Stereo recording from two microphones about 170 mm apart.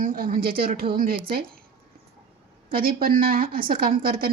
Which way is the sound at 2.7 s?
55° right (ahead or behind).